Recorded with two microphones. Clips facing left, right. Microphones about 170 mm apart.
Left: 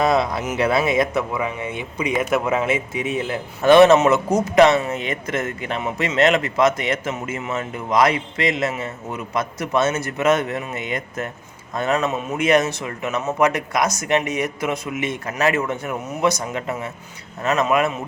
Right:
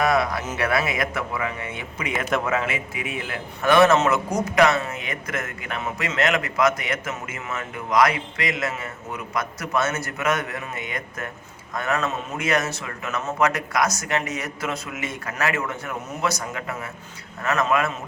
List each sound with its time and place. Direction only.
0.0 s speech: 25° left (ahead or behind)